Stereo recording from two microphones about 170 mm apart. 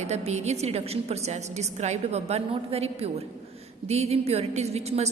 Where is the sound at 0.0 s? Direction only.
40° right (ahead or behind).